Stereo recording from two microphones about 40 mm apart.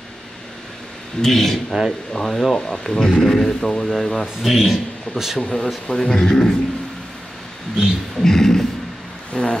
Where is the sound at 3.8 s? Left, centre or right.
Centre.